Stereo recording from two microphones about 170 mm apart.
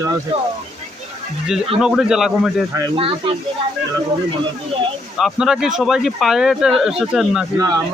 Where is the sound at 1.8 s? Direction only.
5° right (ahead or behind).